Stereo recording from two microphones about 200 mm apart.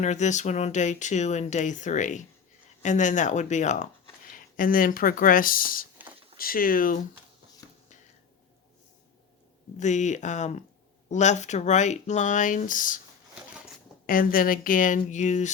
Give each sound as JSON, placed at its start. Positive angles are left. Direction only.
{"t": 0.0, "sound": "speech", "side_deg": 35}
{"t": 9.7, "sound": "speech", "side_deg": 35}
{"t": 14.1, "sound": "speech", "side_deg": 45}